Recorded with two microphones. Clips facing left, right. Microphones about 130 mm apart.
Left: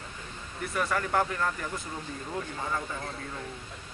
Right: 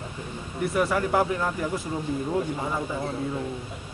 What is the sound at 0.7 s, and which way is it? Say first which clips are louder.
Speech: right 4 dB; 10° right (ahead or behind).